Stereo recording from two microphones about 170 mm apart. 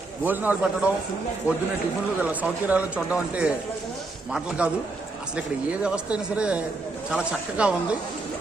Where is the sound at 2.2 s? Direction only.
10° right (ahead or behind).